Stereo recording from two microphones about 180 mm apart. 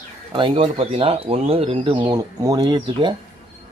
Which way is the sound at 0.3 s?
30° right (ahead or behind).